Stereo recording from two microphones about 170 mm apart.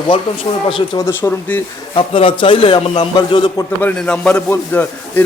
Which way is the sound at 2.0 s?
30° left (ahead or behind).